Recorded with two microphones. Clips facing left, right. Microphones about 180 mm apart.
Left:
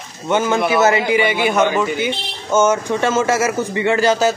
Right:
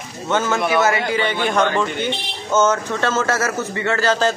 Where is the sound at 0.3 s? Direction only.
10° left (ahead or behind).